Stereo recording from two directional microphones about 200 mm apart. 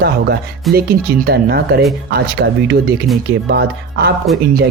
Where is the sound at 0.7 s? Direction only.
50° right (ahead or behind).